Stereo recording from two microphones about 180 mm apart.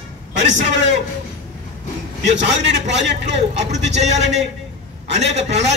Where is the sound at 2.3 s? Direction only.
80° right.